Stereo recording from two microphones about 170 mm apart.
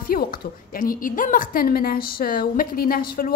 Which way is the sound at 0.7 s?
55° left (ahead or behind).